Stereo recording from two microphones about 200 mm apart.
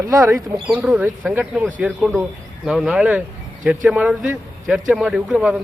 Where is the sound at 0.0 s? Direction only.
15° right (ahead or behind).